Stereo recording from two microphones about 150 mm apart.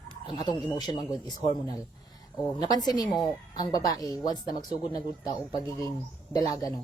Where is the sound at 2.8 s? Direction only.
25° left (ahead or behind).